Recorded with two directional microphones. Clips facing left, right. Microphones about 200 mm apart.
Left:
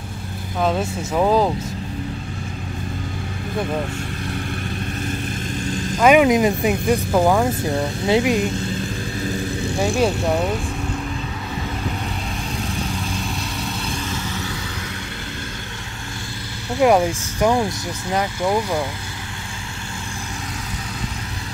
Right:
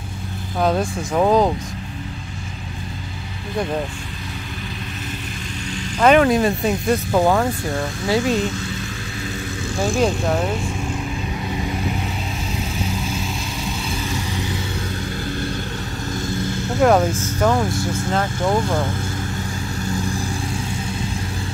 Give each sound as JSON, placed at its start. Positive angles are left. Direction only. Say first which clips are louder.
{"t": 0.6, "sound": "speech", "louder": "right 1 dB", "side_deg": 0}
{"t": 5.7, "sound": "vehicle", "louder": "left 4 dB", "side_deg": 50}
{"t": 5.9, "sound": "speech", "louder": "even", "side_deg": 10}
{"t": 7.6, "sound": "speech", "louder": "left 2 dB", "side_deg": 20}
{"t": 9.8, "sound": "speech", "louder": "even", "side_deg": 5}
{"t": 16.8, "sound": "speech", "louder": "even", "side_deg": 10}